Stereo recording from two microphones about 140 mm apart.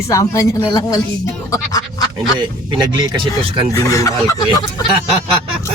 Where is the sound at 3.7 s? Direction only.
20° left (ahead or behind).